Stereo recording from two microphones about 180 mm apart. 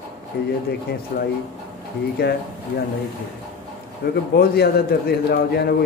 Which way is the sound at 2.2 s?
60° left (ahead or behind).